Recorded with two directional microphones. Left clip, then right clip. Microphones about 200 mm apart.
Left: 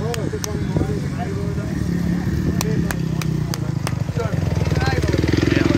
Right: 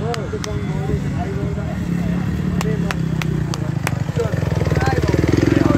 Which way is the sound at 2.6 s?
30° left (ahead or behind).